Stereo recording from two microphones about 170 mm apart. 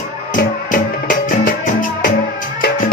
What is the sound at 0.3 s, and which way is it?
Music, 55° left (ahead or behind).